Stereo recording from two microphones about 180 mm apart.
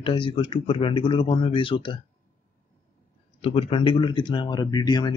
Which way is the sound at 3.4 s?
30° left (ahead or behind).